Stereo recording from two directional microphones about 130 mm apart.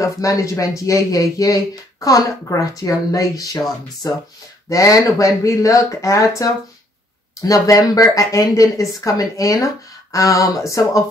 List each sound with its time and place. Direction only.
0.0 s speech: 25° left (ahead or behind)